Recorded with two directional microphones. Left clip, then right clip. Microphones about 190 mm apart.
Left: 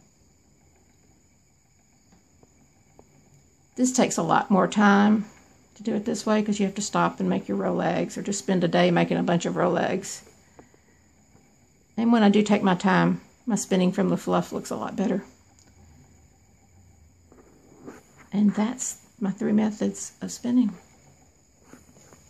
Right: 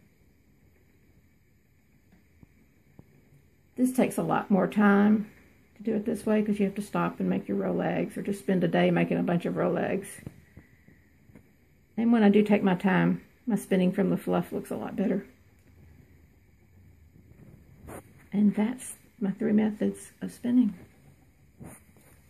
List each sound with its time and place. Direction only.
3.7 s speech: 20° left (ahead or behind)
11.9 s speech: 15° left (ahead or behind)
18.3 s a sound: 15° left (ahead or behind)
19.2 s speech: 15° left (ahead or behind)